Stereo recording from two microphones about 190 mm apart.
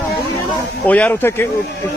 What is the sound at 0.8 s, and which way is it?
Speech, 5° left (ahead or behind).